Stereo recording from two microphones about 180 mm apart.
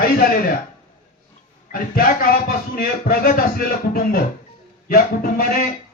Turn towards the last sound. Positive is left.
turn(degrees=55)  # may be behind; listen again after turning